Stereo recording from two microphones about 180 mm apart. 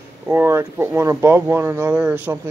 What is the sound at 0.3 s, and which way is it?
Speech, 10° right (ahead or behind).